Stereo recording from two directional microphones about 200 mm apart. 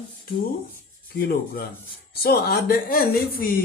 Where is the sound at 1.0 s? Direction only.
50° left (ahead or behind).